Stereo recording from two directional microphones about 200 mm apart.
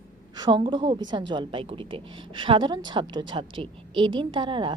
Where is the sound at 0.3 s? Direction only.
20° right (ahead or behind).